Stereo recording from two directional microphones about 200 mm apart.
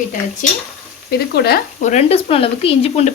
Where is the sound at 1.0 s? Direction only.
50° left (ahead or behind).